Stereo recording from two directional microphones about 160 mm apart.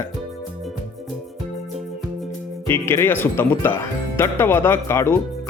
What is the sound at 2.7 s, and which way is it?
Speech, 15° left (ahead or behind).